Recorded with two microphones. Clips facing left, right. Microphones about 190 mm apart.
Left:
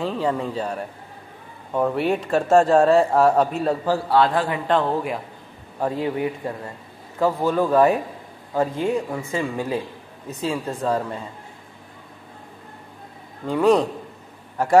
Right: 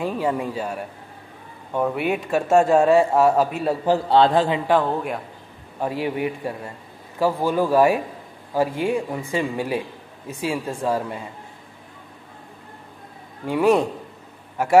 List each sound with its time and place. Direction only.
0.0 s speech: 15° right (ahead or behind)
3.8 s a man's voice: 20° right (ahead or behind)
4.6 s speech: centre (ahead or behind)
6.0 s a man's voice: 20° right (ahead or behind)
13.5 s speech: 10° right (ahead or behind)